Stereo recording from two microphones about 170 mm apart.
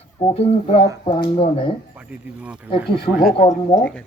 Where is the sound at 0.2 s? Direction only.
35° left (ahead or behind).